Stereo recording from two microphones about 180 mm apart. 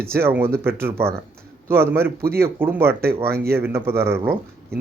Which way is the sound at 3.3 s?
60° right (ahead or behind).